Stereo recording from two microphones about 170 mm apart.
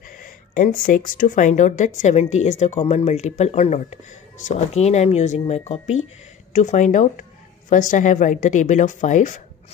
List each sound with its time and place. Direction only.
0.2 s speech: 55° left (ahead or behind)